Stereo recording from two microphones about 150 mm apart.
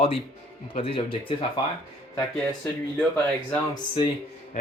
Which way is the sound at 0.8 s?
35° left (ahead or behind).